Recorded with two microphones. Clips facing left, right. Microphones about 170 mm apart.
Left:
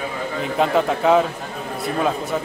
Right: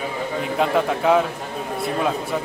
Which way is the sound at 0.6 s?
Centre (ahead or behind).